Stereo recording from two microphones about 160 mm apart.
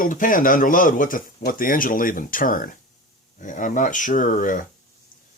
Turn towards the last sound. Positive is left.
turn(degrees=55)  # may be behind; listen again after turning